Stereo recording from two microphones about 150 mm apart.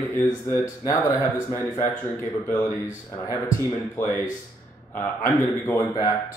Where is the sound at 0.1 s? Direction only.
15° left (ahead or behind).